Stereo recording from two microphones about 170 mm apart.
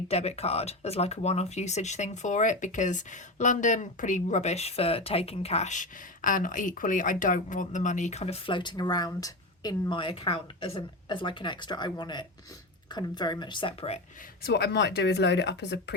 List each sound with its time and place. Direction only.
0.1 s speech: 40° left (ahead or behind)
14.4 s speech: 75° left (ahead or behind)